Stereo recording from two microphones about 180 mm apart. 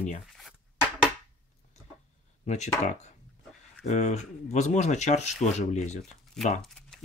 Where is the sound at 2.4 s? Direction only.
40° left (ahead or behind).